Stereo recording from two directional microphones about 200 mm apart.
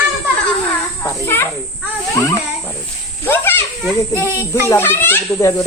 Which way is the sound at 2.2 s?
15° left (ahead or behind).